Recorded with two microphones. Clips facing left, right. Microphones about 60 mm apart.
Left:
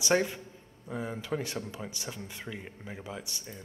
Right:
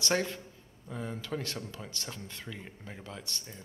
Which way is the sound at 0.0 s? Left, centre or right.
Centre.